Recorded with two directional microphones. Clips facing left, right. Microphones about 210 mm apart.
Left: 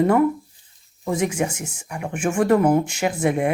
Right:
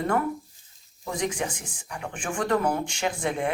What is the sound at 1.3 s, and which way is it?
Speech, 25° left (ahead or behind).